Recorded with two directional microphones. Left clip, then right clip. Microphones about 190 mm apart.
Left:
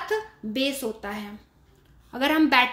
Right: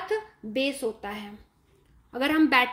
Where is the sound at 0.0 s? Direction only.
5° right (ahead or behind).